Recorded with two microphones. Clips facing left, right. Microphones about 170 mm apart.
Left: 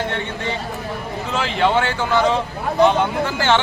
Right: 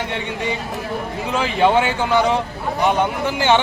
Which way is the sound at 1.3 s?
15° right (ahead or behind).